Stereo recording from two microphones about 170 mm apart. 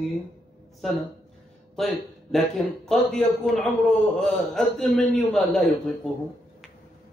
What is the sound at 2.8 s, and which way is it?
A man's voice, centre (ahead or behind).